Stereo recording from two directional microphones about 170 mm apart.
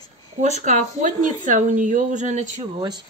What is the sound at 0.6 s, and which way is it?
Speech, 45° right (ahead or behind).